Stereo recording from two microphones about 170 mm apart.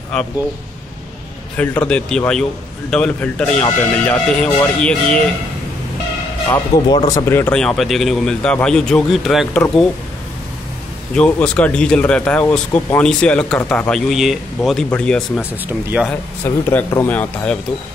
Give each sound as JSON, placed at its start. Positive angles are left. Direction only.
{"t": 1.6, "sound": "a man's voice", "side_deg": 10}
{"t": 6.7, "sound": "a man's voice", "side_deg": 20}
{"t": 11.1, "sound": "a man's voice", "side_deg": 5}